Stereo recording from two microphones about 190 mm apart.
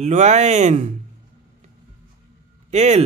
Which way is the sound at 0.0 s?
35° right (ahead or behind).